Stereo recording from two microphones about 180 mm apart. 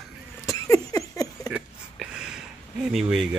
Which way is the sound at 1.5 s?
5° right (ahead or behind).